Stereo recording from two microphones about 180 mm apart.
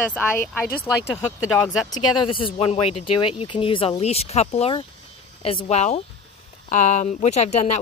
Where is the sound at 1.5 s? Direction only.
15° left (ahead or behind).